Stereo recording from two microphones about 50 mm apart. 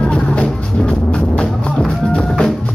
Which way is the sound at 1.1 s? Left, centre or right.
Centre.